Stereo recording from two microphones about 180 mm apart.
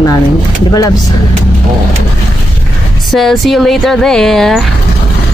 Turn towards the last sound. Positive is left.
turn(degrees=0)  # may be behind; listen again after turning